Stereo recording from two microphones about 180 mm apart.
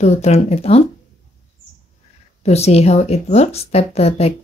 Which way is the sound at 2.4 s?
35° left (ahead or behind).